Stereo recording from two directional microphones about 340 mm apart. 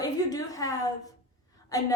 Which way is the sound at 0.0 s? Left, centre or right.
Centre.